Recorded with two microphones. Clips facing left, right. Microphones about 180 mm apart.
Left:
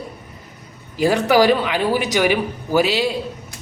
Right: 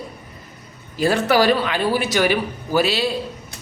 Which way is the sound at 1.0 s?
15° left (ahead or behind).